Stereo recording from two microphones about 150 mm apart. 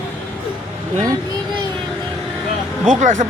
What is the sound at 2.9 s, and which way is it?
Speech, 55° right (ahead or behind).